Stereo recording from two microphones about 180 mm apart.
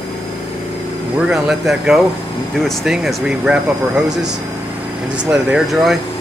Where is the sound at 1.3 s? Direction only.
5° right (ahead or behind).